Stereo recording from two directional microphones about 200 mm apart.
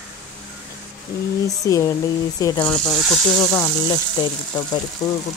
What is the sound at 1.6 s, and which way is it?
Speech, 15° left (ahead or behind).